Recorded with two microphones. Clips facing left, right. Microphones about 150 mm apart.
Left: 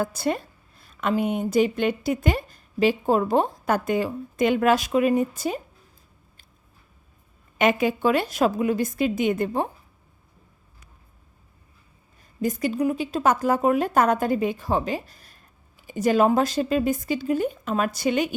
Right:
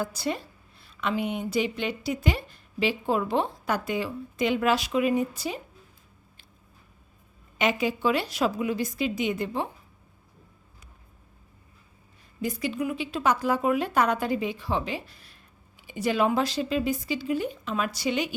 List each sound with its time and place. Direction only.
0.0 s a woman's voice: 50° left (ahead or behind)
7.6 s a woman's voice: 55° left (ahead or behind)
12.4 s a woman's voice: 45° left (ahead or behind)